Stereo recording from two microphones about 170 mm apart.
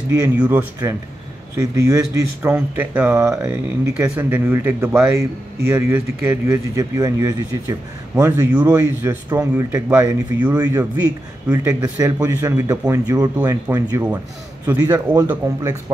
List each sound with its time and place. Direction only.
0.1 s speech: 15° right (ahead or behind)